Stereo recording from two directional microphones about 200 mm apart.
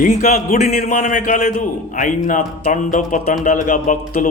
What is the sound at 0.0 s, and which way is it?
A man's voice, 40° left (ahead or behind).